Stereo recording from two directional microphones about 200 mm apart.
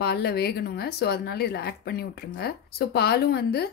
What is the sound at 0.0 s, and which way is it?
Speech, 55° left (ahead or behind).